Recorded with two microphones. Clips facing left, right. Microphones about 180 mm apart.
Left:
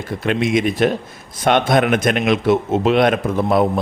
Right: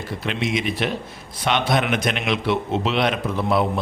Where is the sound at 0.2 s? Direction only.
50° left (ahead or behind).